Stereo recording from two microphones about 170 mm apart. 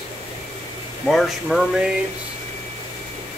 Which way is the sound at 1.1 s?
Centre (ahead or behind).